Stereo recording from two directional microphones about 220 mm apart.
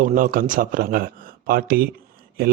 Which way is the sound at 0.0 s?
40° right (ahead or behind).